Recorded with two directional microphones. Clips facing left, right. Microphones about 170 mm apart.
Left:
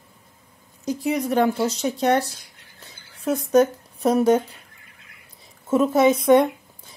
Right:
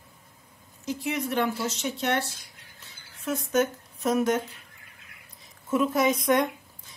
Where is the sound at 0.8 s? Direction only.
40° left (ahead or behind).